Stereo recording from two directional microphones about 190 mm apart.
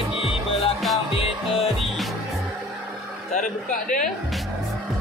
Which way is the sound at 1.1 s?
30° left (ahead or behind).